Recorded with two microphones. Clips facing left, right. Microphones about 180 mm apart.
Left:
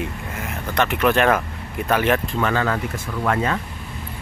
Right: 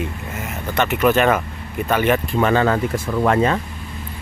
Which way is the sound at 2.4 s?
25° right (ahead or behind).